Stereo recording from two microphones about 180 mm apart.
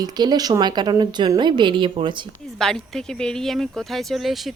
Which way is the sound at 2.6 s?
5° left (ahead or behind).